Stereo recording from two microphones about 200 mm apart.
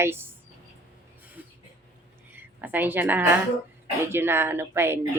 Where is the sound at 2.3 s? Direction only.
10° right (ahead or behind).